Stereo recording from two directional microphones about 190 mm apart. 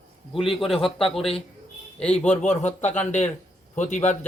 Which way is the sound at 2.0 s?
5° left (ahead or behind).